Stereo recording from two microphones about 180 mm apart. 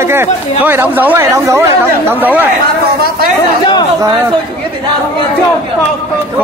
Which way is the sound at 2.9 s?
60° right (ahead or behind).